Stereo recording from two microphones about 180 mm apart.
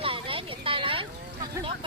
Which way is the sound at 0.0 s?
30° right (ahead or behind).